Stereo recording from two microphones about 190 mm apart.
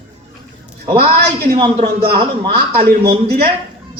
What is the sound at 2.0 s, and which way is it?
A man's voice, 55° right (ahead or behind).